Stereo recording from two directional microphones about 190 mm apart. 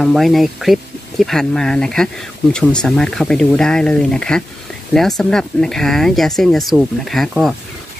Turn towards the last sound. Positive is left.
turn(degrees=0)  # may be behind; listen again after turning